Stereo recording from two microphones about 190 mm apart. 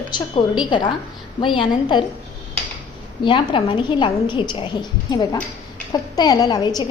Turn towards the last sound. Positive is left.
turn(degrees=20)  # may be behind; listen again after turning